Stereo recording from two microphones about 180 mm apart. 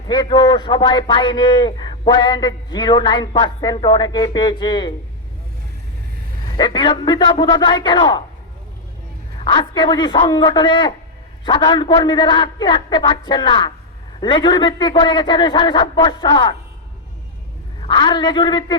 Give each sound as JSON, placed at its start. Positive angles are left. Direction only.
{"t": 0.1, "sound": "a man's voice", "side_deg": 25}
{"t": 6.5, "sound": "a man's voice", "side_deg": 25}
{"t": 9.4, "sound": "a man's voice", "side_deg": 25}
{"t": 17.7, "sound": "a man's voice", "side_deg": 25}